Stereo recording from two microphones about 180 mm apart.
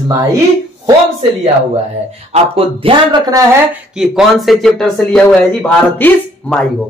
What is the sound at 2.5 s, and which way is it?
Speech, 30° right (ahead or behind).